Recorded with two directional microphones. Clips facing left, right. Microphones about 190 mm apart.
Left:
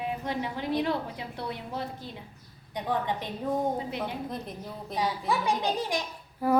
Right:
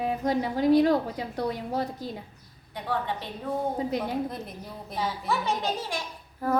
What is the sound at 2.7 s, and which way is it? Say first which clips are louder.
Speech: left 1 dB; 15° left (ahead or behind).